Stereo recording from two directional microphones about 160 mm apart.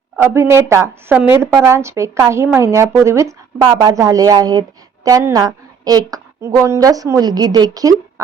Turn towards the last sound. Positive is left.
turn(degrees=-25)  # may be behind; listen again after turning